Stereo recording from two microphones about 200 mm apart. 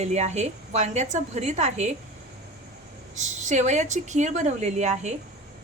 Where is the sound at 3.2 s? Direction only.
35° right (ahead or behind).